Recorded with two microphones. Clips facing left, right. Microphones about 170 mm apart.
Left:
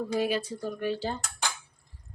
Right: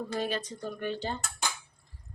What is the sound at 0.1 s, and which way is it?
Speech, 10° left (ahead or behind).